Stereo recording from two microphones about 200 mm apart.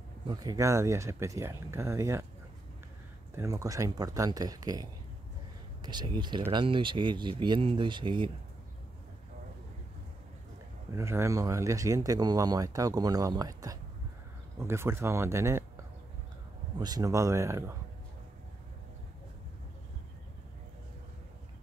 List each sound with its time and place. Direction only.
0.3 s speech: 20° right (ahead or behind)
3.3 s speech: 15° right (ahead or behind)
11.0 s speech: 15° right (ahead or behind)